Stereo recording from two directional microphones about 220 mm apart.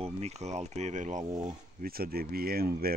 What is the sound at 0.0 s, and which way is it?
Speech, 30° right (ahead or behind).